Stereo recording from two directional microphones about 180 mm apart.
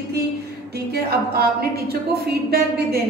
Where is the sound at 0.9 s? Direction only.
60° right (ahead or behind).